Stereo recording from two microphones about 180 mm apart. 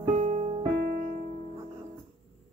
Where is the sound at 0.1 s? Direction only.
35° right (ahead or behind).